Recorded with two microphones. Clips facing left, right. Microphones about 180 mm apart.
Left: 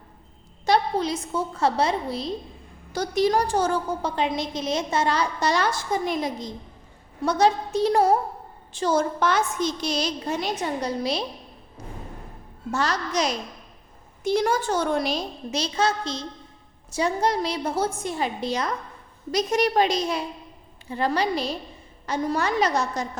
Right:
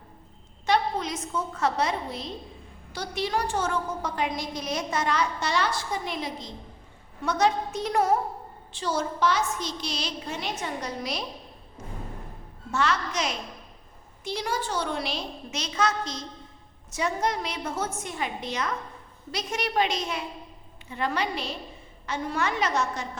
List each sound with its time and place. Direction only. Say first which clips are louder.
0.6 s a woman's voice: left 3 dB; 35° left (ahead or behind)
7.2 s a woman's voice: left 4 dB; 35° left (ahead or behind)
8.7 s a woman's voice: left 6 dB; 45° left (ahead or behind); by 11.3 s 30° left (ahead or behind)
11.8 s music: left 2 dB; 35° left (ahead or behind)
12.7 s a woman's voice: left 2 dB; 40° left (ahead or behind)
14.3 s a woman's voice: left 8 dB; 50° left (ahead or behind)